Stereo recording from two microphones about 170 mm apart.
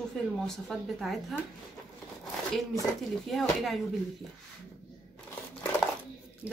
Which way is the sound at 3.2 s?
Centre (ahead or behind).